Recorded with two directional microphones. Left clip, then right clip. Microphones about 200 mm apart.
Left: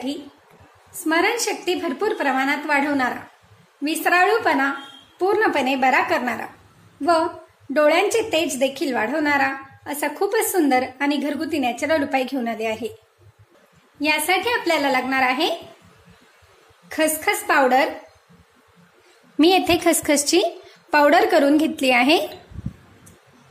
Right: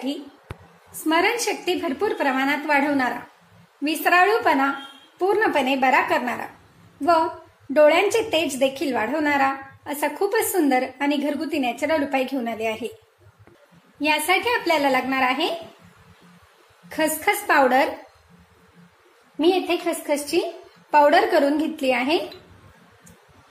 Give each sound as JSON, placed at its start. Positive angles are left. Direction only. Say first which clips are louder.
{"t": 1.0, "sound": "a woman's voice", "louder": "left 1 dB", "side_deg": 0}
{"t": 13.9, "sound": "a woman's voice", "louder": "left 1 dB", "side_deg": 10}
{"t": 16.9, "sound": "a woman's voice", "louder": "left 1 dB", "side_deg": 10}
{"t": 19.3, "sound": "a woman's voice", "louder": "left 4 dB", "side_deg": 40}
{"t": 20.9, "sound": "a woman's voice", "louder": "left 1 dB", "side_deg": 25}